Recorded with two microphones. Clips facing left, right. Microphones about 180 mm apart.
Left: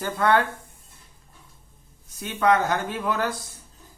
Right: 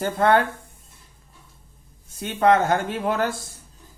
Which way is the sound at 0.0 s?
30° right (ahead or behind).